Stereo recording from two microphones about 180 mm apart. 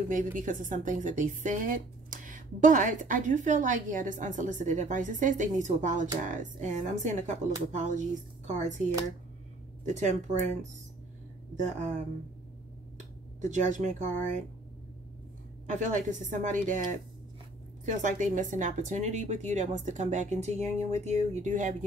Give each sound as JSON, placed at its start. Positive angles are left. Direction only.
{"t": 0.1, "sound": "a woman's voice", "side_deg": -45}
{"t": 13.4, "sound": "a woman's voice", "side_deg": -40}
{"t": 15.6, "sound": "a woman's voice", "side_deg": -45}
{"t": 17.8, "sound": "speech", "side_deg": -45}